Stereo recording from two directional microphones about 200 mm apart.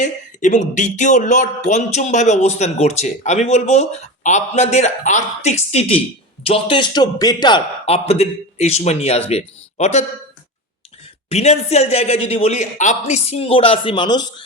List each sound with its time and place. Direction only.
0.0 s a man's voice: 40° left (ahead or behind)
11.3 s speech: 30° left (ahead or behind)